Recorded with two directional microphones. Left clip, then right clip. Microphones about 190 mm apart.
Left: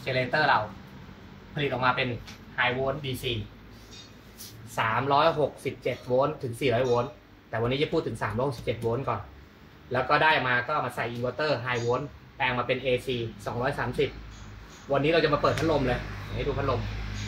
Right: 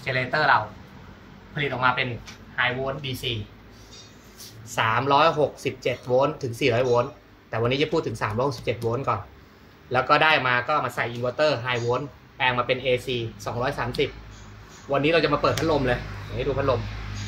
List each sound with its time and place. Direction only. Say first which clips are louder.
0.0 s speech: right 2 dB; centre (ahead or behind)
4.7 s speech: right 4 dB; 35° right (ahead or behind)